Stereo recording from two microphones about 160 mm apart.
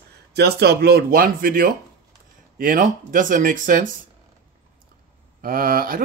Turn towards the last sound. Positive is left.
turn(degrees=-65)  # may be behind; listen again after turning